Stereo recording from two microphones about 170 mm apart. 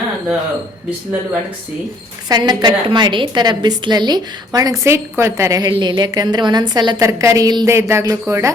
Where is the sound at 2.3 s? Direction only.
25° right (ahead or behind).